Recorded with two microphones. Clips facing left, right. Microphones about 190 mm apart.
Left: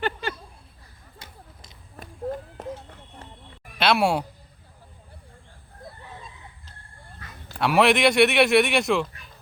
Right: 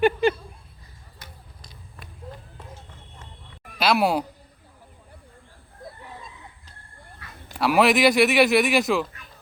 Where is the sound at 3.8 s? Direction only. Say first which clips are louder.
Even; centre (ahead or behind).